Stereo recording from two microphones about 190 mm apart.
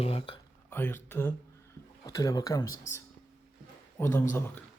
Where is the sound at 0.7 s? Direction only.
10° left (ahead or behind).